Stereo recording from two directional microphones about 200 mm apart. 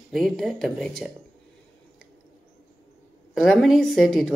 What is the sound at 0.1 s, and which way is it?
Speech, centre (ahead or behind).